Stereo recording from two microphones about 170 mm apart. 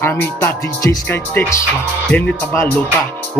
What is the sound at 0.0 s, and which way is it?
Music, 15° left (ahead or behind).